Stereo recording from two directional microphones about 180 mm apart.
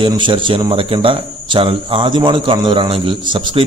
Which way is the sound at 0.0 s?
25° right (ahead or behind).